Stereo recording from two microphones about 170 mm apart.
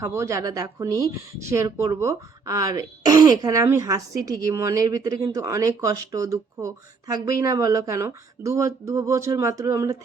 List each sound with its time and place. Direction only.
0.0 s speech: 15° right (ahead or behind)